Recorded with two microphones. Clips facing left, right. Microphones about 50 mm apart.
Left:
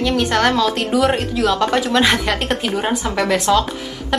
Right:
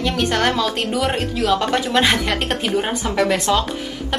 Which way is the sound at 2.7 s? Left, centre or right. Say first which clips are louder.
Even; centre.